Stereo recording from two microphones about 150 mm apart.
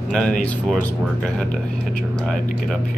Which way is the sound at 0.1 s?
5° left (ahead or behind).